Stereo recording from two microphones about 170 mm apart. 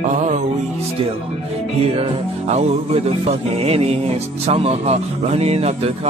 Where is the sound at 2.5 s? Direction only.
40° right (ahead or behind).